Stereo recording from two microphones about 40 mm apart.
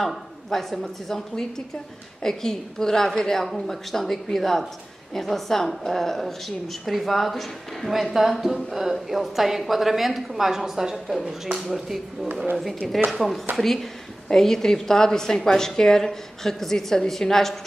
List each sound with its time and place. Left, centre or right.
0.0 s a woman's voice: centre
2.2 s a woman's voice: centre